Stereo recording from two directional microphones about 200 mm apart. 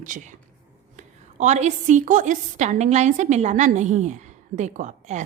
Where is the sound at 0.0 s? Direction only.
40° right (ahead or behind).